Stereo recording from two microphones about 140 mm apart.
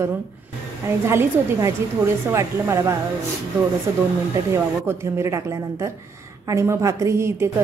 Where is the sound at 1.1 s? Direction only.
20° right (ahead or behind).